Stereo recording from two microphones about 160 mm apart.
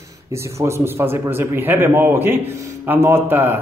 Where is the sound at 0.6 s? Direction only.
15° right (ahead or behind).